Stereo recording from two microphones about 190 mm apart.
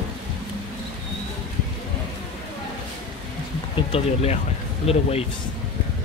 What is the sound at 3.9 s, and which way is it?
Speech, 30° left (ahead or behind).